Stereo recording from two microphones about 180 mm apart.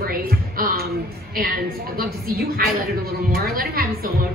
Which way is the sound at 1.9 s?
55° right (ahead or behind).